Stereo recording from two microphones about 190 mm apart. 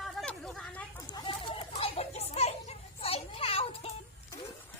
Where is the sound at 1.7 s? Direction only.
35° left (ahead or behind).